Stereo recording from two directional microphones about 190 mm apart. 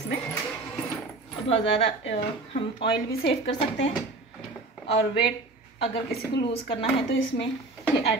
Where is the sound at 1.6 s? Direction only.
70° left (ahead or behind).